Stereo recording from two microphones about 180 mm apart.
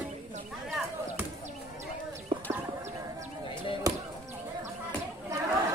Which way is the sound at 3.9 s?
20° right (ahead or behind).